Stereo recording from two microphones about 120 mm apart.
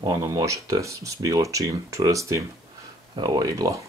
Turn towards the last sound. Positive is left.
turn(degrees=-30)  # may be behind; listen again after turning